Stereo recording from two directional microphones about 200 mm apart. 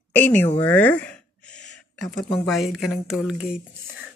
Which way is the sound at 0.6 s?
10° left (ahead or behind).